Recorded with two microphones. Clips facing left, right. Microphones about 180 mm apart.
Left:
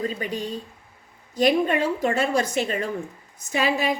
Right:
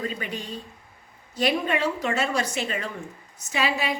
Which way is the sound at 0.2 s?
40° left (ahead or behind).